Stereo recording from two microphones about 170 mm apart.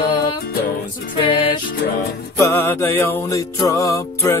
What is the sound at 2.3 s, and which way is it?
Music, 15° left (ahead or behind).